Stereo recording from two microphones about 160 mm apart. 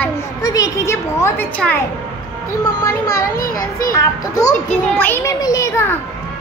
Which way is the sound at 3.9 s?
20° left (ahead or behind).